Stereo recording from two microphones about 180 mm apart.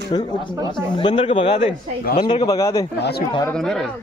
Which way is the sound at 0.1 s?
25° left (ahead or behind).